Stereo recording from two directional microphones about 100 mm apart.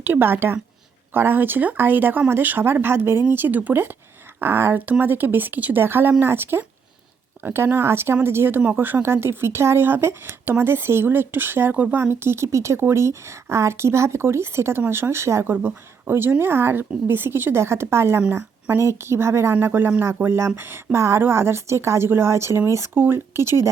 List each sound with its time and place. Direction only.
0.0 s speech: 20° right (ahead or behind)